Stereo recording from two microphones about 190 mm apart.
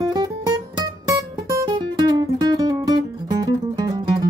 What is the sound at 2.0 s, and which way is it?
Music, 20° right (ahead or behind).